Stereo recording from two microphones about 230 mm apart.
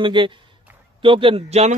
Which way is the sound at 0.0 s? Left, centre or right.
Right.